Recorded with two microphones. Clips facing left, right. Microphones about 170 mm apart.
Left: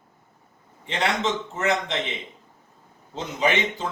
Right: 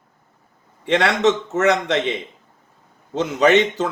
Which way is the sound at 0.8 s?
80° right.